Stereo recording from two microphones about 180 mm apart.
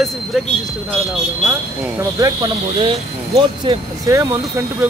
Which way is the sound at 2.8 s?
25° right (ahead or behind).